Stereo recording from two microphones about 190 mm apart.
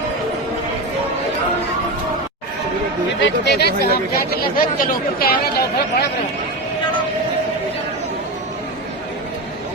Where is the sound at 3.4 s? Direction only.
60° left (ahead or behind).